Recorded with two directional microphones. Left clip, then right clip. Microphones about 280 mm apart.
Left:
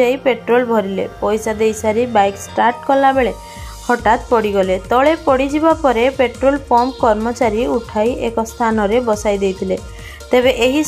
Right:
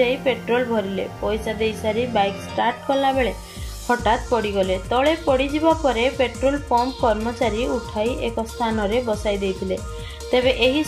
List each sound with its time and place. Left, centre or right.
0.0 s speech: centre